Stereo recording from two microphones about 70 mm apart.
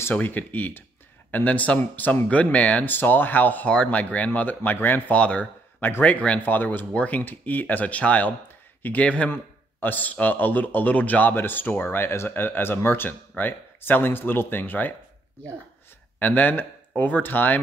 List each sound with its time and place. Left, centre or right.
0.1 s speech: left
5.8 s speech: left
6.0 s speech: left
16.2 s speech: left